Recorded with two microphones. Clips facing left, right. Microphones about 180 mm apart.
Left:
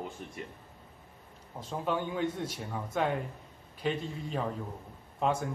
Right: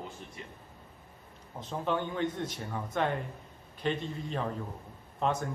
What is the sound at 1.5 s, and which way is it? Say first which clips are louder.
Speech: even; 5° left (ahead or behind).